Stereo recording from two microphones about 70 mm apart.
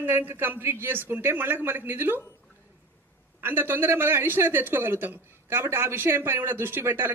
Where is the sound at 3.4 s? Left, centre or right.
Right.